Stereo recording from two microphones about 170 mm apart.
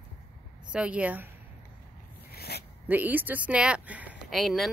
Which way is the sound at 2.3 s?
70° left (ahead or behind).